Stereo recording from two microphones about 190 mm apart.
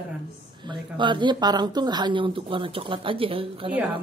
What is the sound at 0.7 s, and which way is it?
Speech, 25° right (ahead or behind).